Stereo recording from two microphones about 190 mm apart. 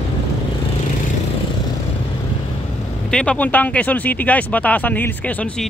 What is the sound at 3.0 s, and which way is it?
Speech, 5° left (ahead or behind).